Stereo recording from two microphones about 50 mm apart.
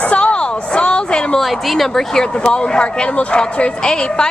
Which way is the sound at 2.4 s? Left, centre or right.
Centre.